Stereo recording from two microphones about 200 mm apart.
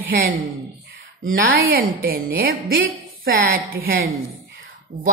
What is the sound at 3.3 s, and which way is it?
Speech, 50° right (ahead or behind).